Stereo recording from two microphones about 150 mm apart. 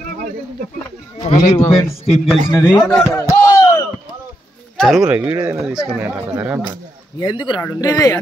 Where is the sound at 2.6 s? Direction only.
5° right (ahead or behind).